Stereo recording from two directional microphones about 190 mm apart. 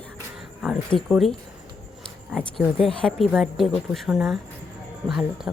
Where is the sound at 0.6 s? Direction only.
Centre (ahead or behind).